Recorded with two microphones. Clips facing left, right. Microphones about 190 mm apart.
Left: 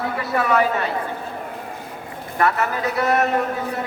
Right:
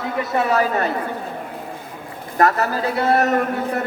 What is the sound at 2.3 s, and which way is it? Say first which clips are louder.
Speech: right 3 dB; 40° right (ahead or behind).